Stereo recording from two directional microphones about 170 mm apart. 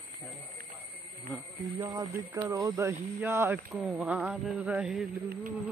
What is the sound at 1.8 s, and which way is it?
Speech, 20° right (ahead or behind).